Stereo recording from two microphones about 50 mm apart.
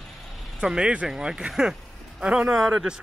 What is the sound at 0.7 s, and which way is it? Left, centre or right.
Speech, centre.